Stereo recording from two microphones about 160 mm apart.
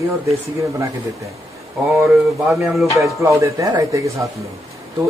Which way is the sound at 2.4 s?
Centre (ahead or behind).